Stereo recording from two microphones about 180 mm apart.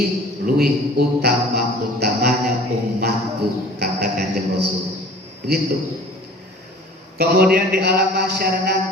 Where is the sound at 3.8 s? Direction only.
55° right (ahead or behind).